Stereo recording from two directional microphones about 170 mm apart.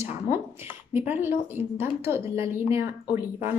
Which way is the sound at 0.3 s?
15° right (ahead or behind).